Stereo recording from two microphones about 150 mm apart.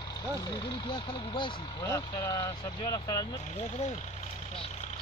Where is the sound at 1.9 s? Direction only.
20° left (ahead or behind).